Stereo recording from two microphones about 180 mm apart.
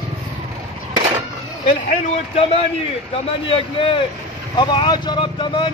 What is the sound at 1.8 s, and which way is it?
A man's voice, 40° left (ahead or behind).